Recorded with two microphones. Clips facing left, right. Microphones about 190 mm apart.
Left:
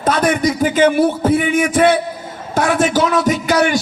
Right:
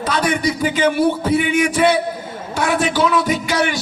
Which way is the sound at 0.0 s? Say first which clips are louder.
Left 3 dB; 50° left (ahead or behind).